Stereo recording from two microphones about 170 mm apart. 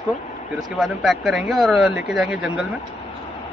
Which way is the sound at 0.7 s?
Centre (ahead or behind).